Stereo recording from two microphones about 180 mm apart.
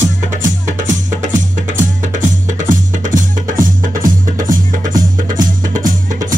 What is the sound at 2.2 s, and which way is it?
Music, 45° right (ahead or behind).